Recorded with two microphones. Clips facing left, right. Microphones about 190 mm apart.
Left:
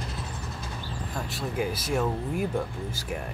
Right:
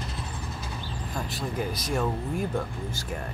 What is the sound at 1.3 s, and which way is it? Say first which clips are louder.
Speech: left 3 dB; 5° left (ahead or behind).